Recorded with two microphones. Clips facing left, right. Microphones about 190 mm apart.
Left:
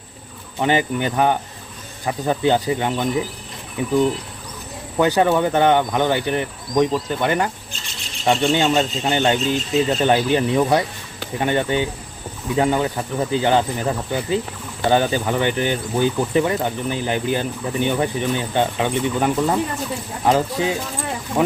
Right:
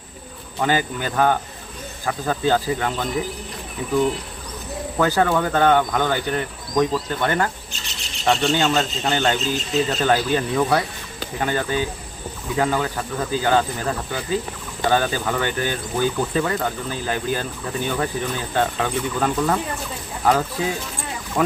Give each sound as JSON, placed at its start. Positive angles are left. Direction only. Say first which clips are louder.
{"t": 0.6, "sound": "speech", "louder": "left 3 dB", "side_deg": 20}
{"t": 4.9, "sound": "speech", "louder": "left 3 dB", "side_deg": 20}